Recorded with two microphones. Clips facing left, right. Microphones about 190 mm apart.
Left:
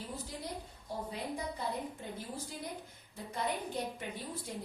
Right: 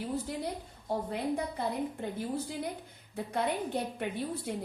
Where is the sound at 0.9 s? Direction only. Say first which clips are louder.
Right 8 dB; 60° right (ahead or behind).